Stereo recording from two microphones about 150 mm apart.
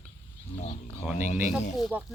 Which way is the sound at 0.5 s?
50° left (ahead or behind).